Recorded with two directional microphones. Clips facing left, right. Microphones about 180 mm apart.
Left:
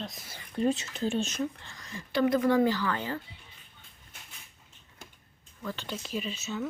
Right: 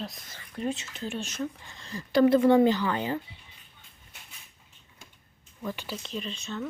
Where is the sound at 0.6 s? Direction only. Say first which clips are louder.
Left 4 dB; 35° left (ahead or behind).